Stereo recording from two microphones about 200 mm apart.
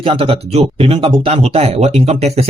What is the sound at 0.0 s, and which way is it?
Speech, 25° right (ahead or behind).